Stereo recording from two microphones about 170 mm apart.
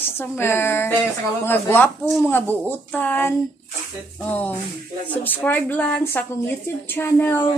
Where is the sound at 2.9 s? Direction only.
10° left (ahead or behind).